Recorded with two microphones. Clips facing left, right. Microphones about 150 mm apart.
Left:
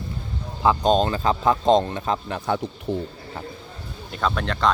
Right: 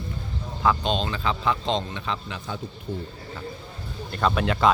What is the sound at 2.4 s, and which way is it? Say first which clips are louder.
Speech: left 9 dB; 65° left (ahead or behind).